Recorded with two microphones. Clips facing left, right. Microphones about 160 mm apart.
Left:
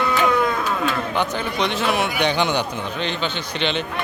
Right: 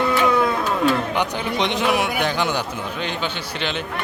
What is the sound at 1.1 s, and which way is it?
Speech, 15° right (ahead or behind).